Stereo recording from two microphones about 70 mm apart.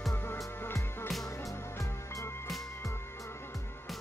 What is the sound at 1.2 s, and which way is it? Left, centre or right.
Music, left.